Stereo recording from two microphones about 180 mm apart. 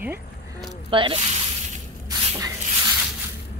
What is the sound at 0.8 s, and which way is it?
Speech, 30° right (ahead or behind).